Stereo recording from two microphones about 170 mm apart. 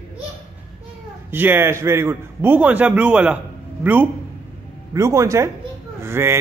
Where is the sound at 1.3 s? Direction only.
10° right (ahead or behind).